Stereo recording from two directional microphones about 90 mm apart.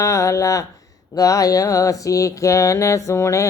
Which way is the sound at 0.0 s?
35° left (ahead or behind).